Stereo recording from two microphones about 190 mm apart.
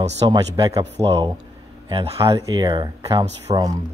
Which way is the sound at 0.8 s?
30° right (ahead or behind).